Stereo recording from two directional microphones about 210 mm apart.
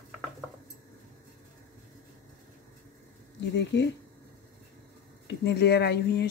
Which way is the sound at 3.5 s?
55° left (ahead or behind).